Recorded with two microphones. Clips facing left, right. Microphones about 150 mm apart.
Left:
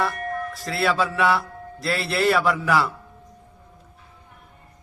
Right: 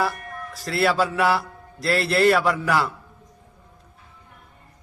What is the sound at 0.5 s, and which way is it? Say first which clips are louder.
A man's voice: right 3 dB; centre (ahead or behind).